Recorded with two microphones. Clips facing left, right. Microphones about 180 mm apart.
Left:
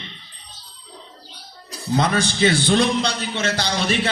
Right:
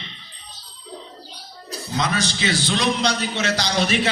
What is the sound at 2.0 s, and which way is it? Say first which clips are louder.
Music: left 4 dB; 55° left (ahead or behind).